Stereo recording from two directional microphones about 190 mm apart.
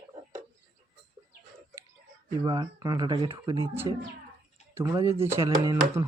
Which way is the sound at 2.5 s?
20° right (ahead or behind).